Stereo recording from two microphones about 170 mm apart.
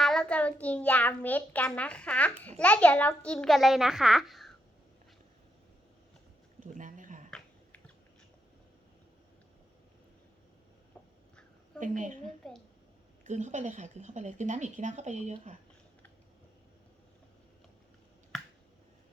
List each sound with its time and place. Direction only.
0.0 s a child's voice: 5° left (ahead or behind)
6.7 s a sound: 50° right (ahead or behind)
7.3 s finger snapping: 5° left (ahead or behind)
11.8 s speech: 50° right (ahead or behind)